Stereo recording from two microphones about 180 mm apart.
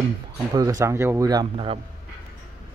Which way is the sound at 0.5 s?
20° right (ahead or behind).